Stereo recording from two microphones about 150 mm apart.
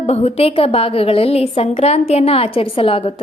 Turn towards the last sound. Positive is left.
turn(degrees=40)  # may be behind; listen again after turning